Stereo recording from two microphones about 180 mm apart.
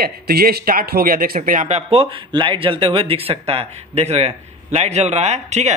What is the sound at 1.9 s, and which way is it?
Speech, 30° right (ahead or behind).